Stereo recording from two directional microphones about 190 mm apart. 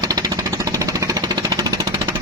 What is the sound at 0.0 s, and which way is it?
Jackhammer, 20° right (ahead or behind).